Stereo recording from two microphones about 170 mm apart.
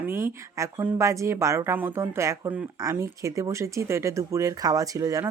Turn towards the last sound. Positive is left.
turn(degrees=-20)  # may be behind; listen again after turning